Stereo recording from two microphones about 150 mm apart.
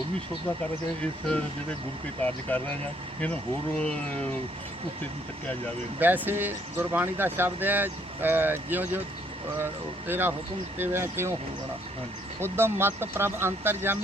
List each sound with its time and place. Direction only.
0.6 s speech: 10° left (ahead or behind)
2.5 s speech: 10° left (ahead or behind)
3.8 s speech: 5° left (ahead or behind)
6.0 s speech: 10° right (ahead or behind)
10.1 s speech: 15° right (ahead or behind)
12.4 s speech: 15° right (ahead or behind)